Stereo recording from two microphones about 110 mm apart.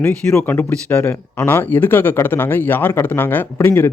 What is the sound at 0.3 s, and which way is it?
Speech, 15° left (ahead or behind).